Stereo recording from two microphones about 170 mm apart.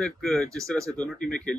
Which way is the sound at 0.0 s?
Centre (ahead or behind).